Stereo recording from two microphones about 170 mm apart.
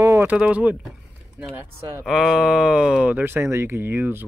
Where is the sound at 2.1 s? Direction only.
5° right (ahead or behind).